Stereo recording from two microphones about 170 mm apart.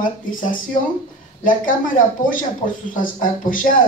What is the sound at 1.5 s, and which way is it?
Speech, 50° left (ahead or behind).